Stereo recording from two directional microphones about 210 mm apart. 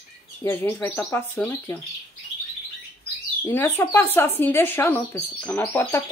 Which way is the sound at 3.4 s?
10° left (ahead or behind).